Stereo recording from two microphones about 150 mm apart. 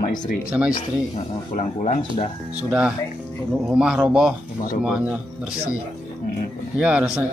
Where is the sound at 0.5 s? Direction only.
5° right (ahead or behind).